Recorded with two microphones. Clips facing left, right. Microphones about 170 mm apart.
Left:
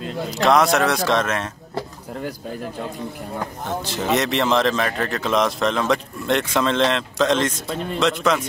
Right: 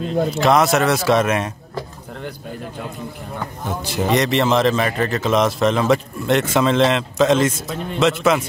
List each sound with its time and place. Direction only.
0.4 s a man's voice: centre (ahead or behind)
3.6 s speech: 10° right (ahead or behind)
4.1 s a man's voice: centre (ahead or behind)